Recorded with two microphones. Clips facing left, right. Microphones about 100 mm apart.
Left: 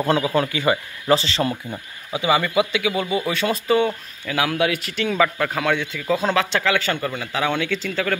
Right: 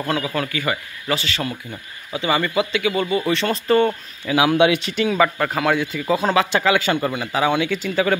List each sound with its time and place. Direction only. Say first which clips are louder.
0.0 s speech: left 4 dB; 25° left (ahead or behind)
2.1 s speech: left 1 dB; 10° left (ahead or behind)
4.3 s speech: right 5 dB; 15° right (ahead or behind)
5.0 s a man's voice: right 1 dB; 5° right (ahead or behind)